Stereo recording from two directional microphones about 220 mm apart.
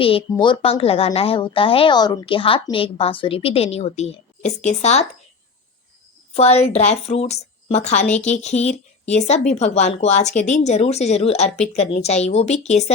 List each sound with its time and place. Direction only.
0.0 s a woman's voice: 25° left (ahead or behind)
6.3 s a woman's voice: 30° left (ahead or behind)